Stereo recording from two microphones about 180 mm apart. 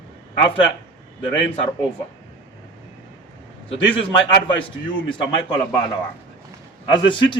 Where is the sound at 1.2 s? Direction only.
30° left (ahead or behind).